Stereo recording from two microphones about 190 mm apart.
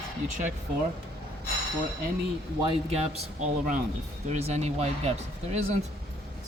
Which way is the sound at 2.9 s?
30° right (ahead or behind).